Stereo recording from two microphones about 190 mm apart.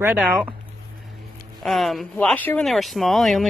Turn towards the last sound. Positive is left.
turn(degrees=0)  # may be behind; listen again after turning